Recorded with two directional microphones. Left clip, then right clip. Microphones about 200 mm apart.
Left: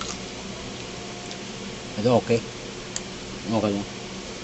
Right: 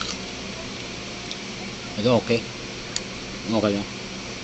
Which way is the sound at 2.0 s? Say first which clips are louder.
Even; 20° left (ahead or behind).